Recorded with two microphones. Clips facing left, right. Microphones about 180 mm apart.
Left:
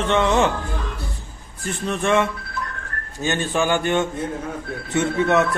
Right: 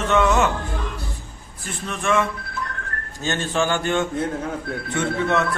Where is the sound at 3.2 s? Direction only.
15° left (ahead or behind).